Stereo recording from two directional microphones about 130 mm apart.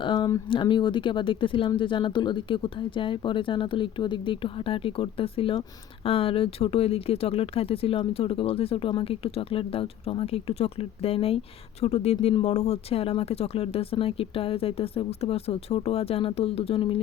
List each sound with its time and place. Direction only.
0.0 s speech: 35° left (ahead or behind)